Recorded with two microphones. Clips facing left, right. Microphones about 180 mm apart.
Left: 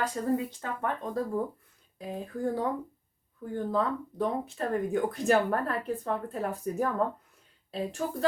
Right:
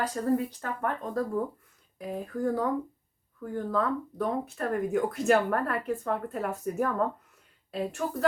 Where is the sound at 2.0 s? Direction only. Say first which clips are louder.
Right 2 dB; 30° left (ahead or behind).